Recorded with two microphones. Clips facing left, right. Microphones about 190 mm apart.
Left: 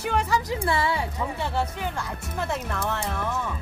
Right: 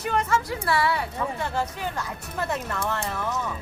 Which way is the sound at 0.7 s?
25° left (ahead or behind).